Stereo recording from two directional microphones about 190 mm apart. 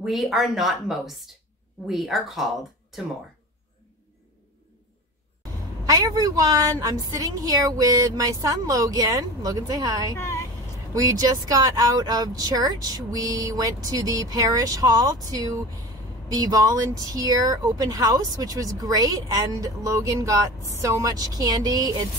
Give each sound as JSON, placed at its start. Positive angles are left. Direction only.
{"t": 0.0, "sound": "speech", "side_deg": 0}
{"t": 5.9, "sound": "speech", "side_deg": -20}
{"t": 10.1, "sound": "vehicle", "side_deg": 15}
{"t": 11.0, "sound": "speech", "side_deg": -20}